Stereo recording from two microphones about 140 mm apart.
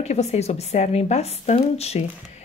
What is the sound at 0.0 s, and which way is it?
Speech, 50° left (ahead or behind).